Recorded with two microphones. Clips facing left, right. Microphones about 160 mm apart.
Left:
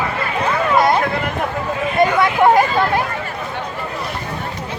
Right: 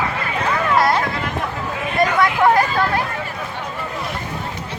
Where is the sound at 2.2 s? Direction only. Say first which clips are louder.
Left 1 dB; 25° left (ahead or behind).